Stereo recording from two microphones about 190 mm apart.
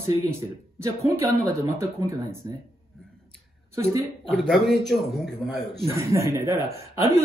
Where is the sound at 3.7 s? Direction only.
15° right (ahead or behind).